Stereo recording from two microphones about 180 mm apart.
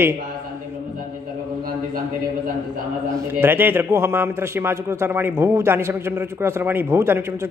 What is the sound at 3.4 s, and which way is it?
A man's voice, 10° right (ahead or behind).